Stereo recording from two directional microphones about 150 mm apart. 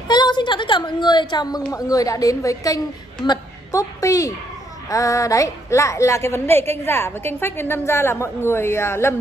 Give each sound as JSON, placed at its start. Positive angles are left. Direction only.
{"t": 0.1, "sound": "a child's voice", "side_deg": 30}